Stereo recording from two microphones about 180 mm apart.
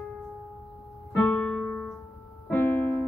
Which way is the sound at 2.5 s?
10° left (ahead or behind).